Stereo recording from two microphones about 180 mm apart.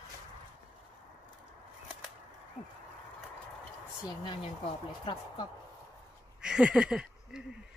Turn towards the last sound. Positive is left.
turn(degrees=-5)  # may be behind; listen again after turning